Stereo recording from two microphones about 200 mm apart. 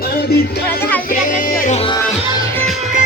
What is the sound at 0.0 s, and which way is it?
Music, 55° left (ahead or behind).